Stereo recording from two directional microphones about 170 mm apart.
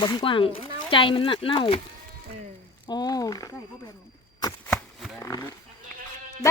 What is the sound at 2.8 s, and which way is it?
Speech, 25° left (ahead or behind).